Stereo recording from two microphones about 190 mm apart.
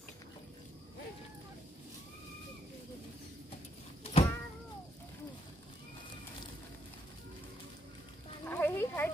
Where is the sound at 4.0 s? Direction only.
30° left (ahead or behind).